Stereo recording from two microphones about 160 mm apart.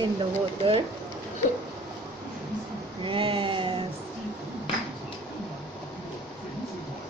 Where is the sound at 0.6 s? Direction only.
30° right (ahead or behind).